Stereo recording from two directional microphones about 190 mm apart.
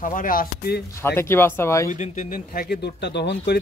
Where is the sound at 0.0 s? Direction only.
45° left (ahead or behind).